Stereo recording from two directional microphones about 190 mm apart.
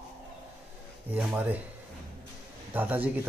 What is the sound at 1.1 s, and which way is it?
Speech, 10° right (ahead or behind).